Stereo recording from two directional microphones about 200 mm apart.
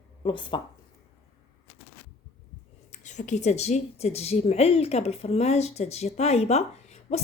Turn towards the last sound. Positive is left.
turn(degrees=30)  # may be behind; listen again after turning